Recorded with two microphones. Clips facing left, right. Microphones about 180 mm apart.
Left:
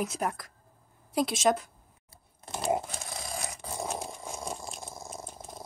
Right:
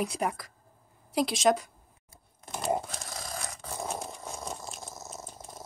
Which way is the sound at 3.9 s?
5° left (ahead or behind).